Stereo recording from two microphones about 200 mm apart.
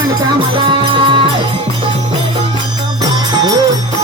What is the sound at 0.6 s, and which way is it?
Music, 25° right (ahead or behind).